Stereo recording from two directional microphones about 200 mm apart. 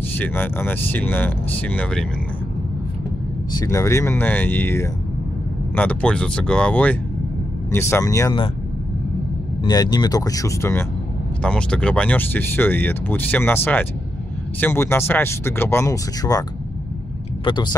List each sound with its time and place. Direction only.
0.1 s speech: 10° left (ahead or behind)
3.5 s speech: 15° left (ahead or behind)
9.6 s speech: 20° left (ahead or behind)
17.5 s speech: 20° left (ahead or behind)